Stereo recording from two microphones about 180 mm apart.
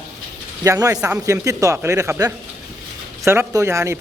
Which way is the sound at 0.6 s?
15° right (ahead or behind).